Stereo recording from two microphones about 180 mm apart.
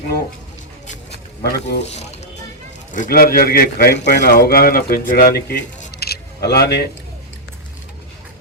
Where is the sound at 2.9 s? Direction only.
50° left (ahead or behind).